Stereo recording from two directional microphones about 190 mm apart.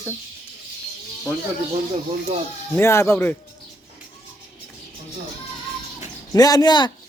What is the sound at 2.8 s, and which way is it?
Speech, 15° left (ahead or behind).